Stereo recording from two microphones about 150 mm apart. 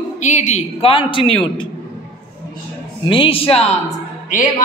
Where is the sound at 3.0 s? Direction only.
35° left (ahead or behind).